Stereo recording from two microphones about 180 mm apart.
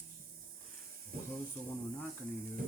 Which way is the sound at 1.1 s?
55° right (ahead or behind).